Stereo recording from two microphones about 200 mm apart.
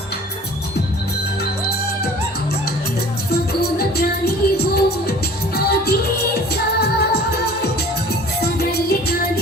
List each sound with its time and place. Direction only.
3.3 s music: 50° left (ahead or behind)